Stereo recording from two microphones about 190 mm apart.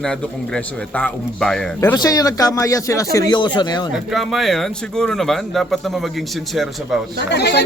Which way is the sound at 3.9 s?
Centre (ahead or behind).